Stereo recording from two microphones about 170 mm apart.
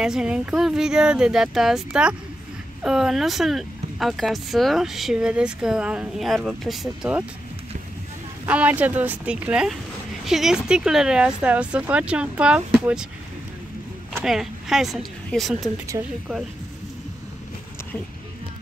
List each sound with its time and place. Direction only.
0.0 s speech: 5° right (ahead or behind)
8.5 s speech: 10° right (ahead or behind)
14.2 s speech: centre (ahead or behind)
16.0 s speech: 25° right (ahead or behind)